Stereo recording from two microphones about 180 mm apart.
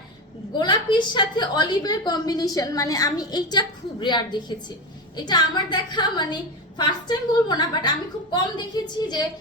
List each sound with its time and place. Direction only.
0.5 s a woman's voice: 25° left (ahead or behind)